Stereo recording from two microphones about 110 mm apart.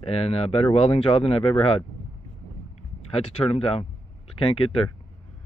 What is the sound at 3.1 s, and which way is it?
Speech, 65° left (ahead or behind).